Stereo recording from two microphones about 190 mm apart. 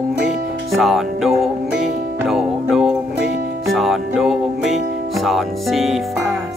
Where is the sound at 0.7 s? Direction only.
Centre (ahead or behind).